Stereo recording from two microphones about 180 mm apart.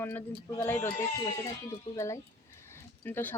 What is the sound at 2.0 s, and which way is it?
A woman's voice, 15° left (ahead or behind).